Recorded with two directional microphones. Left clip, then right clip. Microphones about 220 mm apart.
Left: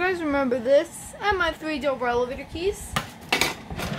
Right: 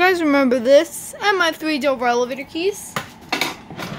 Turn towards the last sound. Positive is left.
turn(degrees=25)  # may be behind; listen again after turning